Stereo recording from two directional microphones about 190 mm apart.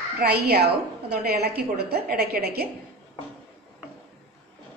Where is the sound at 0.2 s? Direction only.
55° right (ahead or behind).